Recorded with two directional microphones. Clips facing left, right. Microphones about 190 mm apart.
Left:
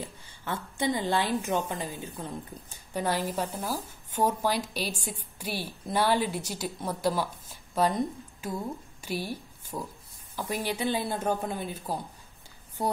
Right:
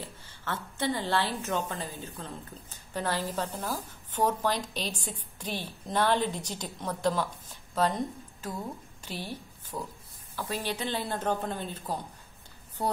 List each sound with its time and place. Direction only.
0.0 s a woman's voice: 15° left (ahead or behind)